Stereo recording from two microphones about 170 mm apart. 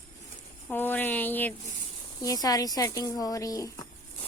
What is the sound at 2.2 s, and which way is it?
A woman's voice, 20° left (ahead or behind).